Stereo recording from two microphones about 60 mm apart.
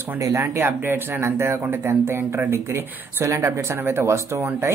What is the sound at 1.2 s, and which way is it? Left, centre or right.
Speech, right.